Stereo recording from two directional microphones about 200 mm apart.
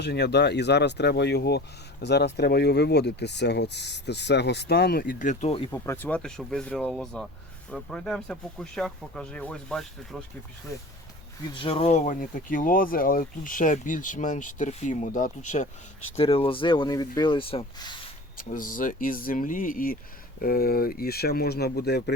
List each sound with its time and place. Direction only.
0.0 s speech: 55° left (ahead or behind); by 5.6 s 35° left (ahead or behind)
5.7 s speech: 15° left (ahead or behind)
11.4 s speech: 25° left (ahead or behind)
18.3 s speech: 45° left (ahead or behind)